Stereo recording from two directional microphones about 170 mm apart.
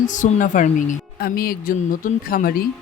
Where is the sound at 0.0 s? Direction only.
45° left (ahead or behind).